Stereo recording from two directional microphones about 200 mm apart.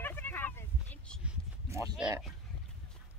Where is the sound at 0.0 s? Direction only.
10° left (ahead or behind).